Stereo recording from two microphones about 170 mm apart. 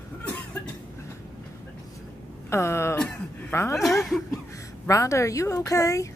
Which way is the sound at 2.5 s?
15° left (ahead or behind).